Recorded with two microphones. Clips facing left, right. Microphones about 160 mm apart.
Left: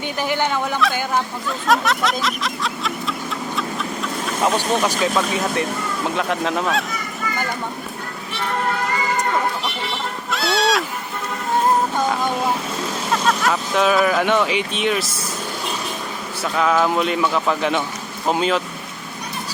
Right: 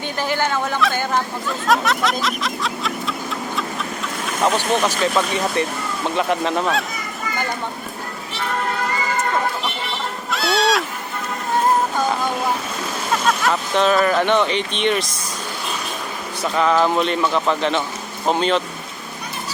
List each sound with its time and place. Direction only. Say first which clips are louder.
0.2 s speech: even; 15° left (ahead or behind)
1.5 s vehicle: even; centre (ahead or behind)
4.4 s speech: right 1 dB; 5° left (ahead or behind)
10.3 s goat: right 1 dB; centre (ahead or behind)
13.1 s speech: even; centre (ahead or behind)
16.6 s speech: right 1 dB; centre (ahead or behind)